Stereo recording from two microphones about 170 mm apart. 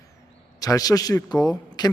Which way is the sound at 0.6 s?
20° left (ahead or behind).